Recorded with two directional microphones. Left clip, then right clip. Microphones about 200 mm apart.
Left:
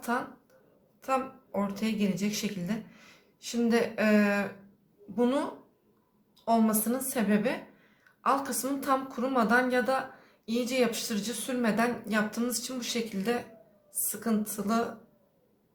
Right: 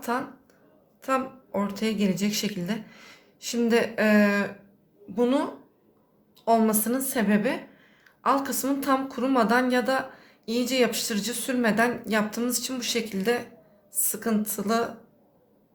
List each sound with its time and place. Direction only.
0.0 s a woman's voice: 25° right (ahead or behind)